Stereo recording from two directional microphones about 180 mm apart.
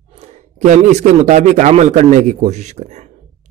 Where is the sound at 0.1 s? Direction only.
40° right (ahead or behind).